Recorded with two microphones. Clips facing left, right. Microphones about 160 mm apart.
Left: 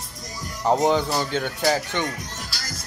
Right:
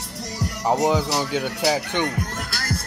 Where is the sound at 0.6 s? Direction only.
5° right (ahead or behind).